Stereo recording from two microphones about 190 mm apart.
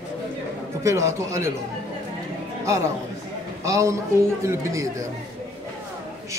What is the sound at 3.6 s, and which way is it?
A man's voice, 15° right (ahead or behind).